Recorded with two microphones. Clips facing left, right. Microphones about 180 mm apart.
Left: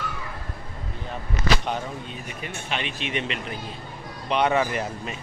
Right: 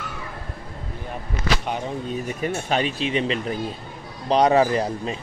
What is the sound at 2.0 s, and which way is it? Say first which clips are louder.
Speech: right 10 dB; 40° right (ahead or behind).